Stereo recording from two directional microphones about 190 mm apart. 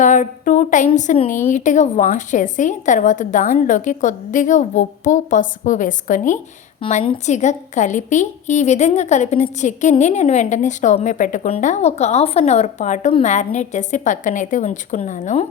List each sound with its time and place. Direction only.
0.0 s a woman's voice: 40° left (ahead or behind)
6.8 s a woman's voice: 30° left (ahead or behind)